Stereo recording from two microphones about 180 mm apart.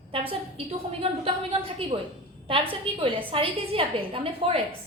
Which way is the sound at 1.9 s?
30° right (ahead or behind).